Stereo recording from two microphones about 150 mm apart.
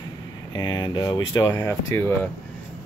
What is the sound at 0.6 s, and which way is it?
Speech, 30° left (ahead or behind).